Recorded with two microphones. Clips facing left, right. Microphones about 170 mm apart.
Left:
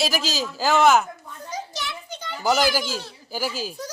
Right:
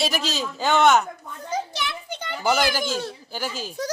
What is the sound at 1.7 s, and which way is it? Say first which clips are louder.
Children playing: right 3 dB; 65° right (ahead or behind).